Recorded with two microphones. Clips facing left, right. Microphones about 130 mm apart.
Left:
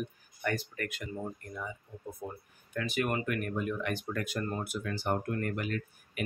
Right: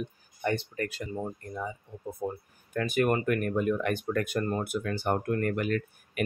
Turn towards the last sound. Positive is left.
turn(degrees=-55)  # may be behind; listen again after turning